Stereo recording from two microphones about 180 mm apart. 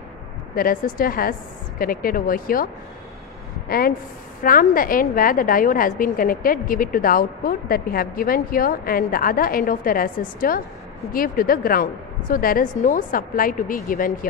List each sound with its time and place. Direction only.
0.6 s a woman's voice: 55° left (ahead or behind)